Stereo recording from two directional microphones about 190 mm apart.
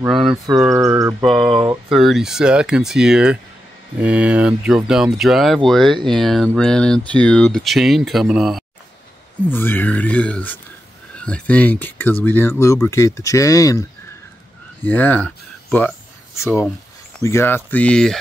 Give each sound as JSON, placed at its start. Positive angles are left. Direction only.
{"t": 0.0, "sound": "a sound", "side_deg": -5}
{"t": 0.5, "sound": "a sound", "side_deg": -15}
{"t": 1.4, "sound": "speech", "side_deg": -20}
{"t": 1.9, "sound": "speech", "side_deg": 0}
{"t": 9.5, "sound": "speech", "side_deg": 10}
{"t": 14.9, "sound": "speech", "side_deg": 10}
{"t": 17.2, "sound": "speech", "side_deg": 15}